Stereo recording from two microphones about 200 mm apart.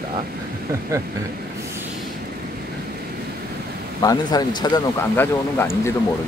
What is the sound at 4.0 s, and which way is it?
Speech, 20° left (ahead or behind).